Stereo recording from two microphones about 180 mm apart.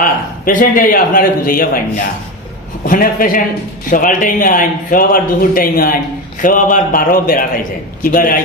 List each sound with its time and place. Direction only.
0.0 s a man's voice: 50° left (ahead or behind)